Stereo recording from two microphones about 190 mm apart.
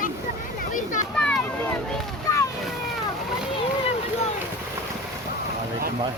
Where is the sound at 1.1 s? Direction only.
5° left (ahead or behind).